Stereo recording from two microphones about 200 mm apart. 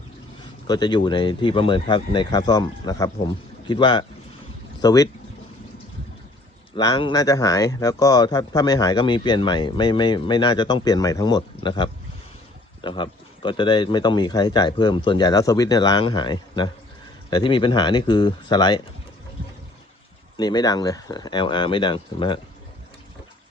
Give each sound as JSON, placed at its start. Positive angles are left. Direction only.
{"t": 0.7, "sound": "speech", "side_deg": 20}
{"t": 6.7, "sound": "speech", "side_deg": 20}
{"t": 20.3, "sound": "speech", "side_deg": 20}